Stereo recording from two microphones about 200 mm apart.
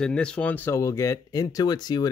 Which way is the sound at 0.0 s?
5° left (ahead or behind).